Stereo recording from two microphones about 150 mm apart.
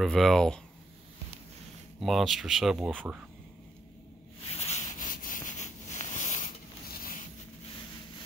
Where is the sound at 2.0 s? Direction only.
Centre (ahead or behind).